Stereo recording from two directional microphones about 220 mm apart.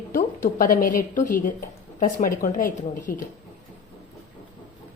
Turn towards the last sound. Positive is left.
turn(degrees=40)  # may be behind; listen again after turning